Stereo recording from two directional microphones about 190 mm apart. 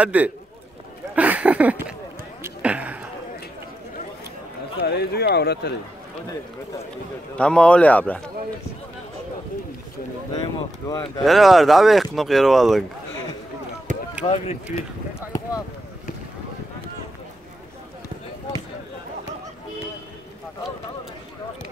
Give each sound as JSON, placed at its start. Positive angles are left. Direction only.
{"t": 0.0, "sound": "a man's voice", "side_deg": -10}
{"t": 1.1, "sound": "a sound", "side_deg": -5}
{"t": 4.8, "sound": "speech", "side_deg": 60}
{"t": 7.3, "sound": "a man's voice", "side_deg": 5}
{"t": 10.3, "sound": "speech", "side_deg": 20}
{"t": 11.2, "sound": "speech", "side_deg": 0}
{"t": 14.2, "sound": "speech", "side_deg": 35}
{"t": 15.1, "sound": "speech", "side_deg": 20}